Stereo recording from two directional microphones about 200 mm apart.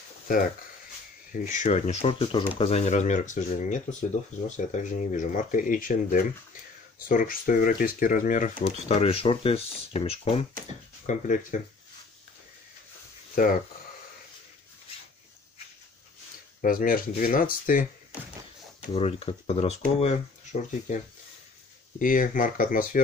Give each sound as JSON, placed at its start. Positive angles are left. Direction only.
{"t": 1.3, "sound": "speech", "side_deg": 40}
{"t": 11.1, "sound": "speech", "side_deg": 40}
{"t": 13.3, "sound": "speech", "side_deg": 45}
{"t": 16.6, "sound": "speech", "side_deg": 45}
{"t": 18.9, "sound": "speech", "side_deg": 30}
{"t": 21.9, "sound": "speech", "side_deg": 40}